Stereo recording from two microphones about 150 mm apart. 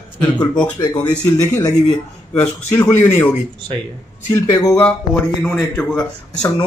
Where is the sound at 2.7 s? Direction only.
15° left (ahead or behind).